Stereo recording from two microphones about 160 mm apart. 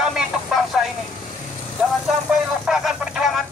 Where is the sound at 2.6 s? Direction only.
5° right (ahead or behind).